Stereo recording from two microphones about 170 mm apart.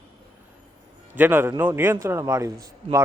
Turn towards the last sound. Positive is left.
turn(degrees=-20)  # may be behind; listen again after turning